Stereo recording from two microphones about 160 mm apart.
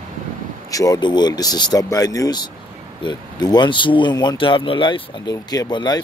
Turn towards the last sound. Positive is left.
turn(degrees=25)  # may be behind; listen again after turning